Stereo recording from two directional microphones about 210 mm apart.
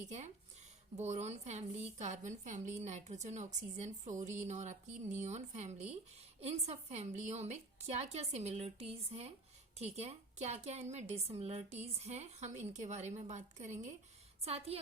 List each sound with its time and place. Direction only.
0.0 s a woman's voice: 35° right (ahead or behind)